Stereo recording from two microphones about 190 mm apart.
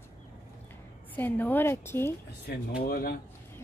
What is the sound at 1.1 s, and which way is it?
A woman's voice, 10° left (ahead or behind).